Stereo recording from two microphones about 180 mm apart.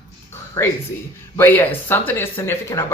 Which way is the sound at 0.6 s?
15° left (ahead or behind).